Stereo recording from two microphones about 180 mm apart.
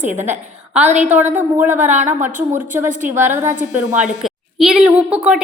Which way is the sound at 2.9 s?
45° right (ahead or behind).